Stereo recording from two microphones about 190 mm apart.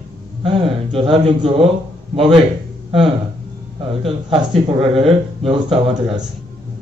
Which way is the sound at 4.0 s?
30° right (ahead or behind).